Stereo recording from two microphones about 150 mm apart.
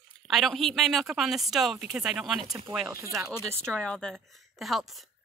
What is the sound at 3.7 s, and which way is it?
A woman's voice, 5° left (ahead or behind).